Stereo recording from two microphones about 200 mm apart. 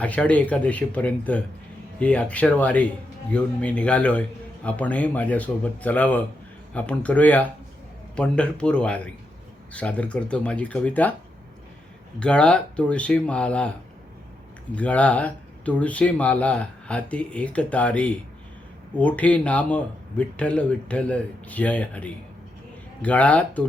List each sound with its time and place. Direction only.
0.0 s speech: 5° left (ahead or behind)
12.2 s speech: 5° left (ahead or behind)
14.8 s speech: 5° left (ahead or behind)